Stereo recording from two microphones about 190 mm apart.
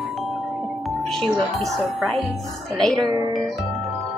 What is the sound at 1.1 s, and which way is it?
Speech, centre (ahead or behind).